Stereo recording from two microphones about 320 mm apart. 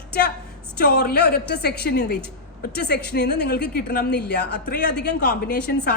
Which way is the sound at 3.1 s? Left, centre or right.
Left.